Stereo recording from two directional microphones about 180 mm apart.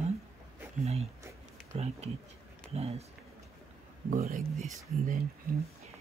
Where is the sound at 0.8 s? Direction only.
35° right (ahead or behind).